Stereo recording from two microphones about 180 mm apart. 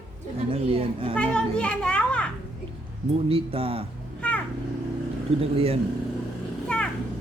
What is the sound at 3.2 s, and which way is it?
Speech, 30° right (ahead or behind).